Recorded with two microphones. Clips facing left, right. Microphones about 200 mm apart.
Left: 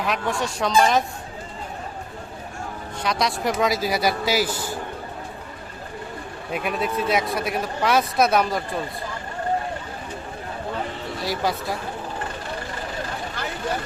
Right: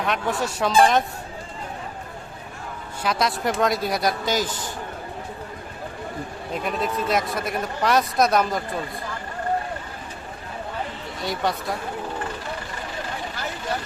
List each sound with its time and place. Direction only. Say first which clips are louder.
0.0 s a man's voice: even; centre (ahead or behind)
3.0 s a man's voice: even; centre (ahead or behind)
6.5 s a man's voice: left 1 dB; 5° left (ahead or behind)
11.2 s a man's voice: even; centre (ahead or behind)